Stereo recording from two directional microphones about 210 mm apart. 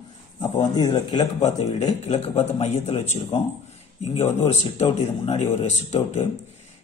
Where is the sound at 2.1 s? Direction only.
30° left (ahead or behind).